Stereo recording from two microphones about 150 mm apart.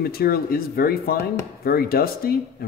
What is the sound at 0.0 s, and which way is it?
Speech, 90° left.